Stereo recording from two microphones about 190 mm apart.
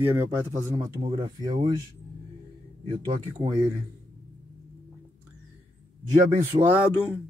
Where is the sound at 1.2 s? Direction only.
20° right (ahead or behind).